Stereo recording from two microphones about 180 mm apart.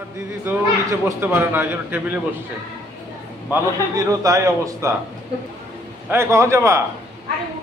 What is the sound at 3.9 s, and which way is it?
A man's voice, 20° right (ahead or behind).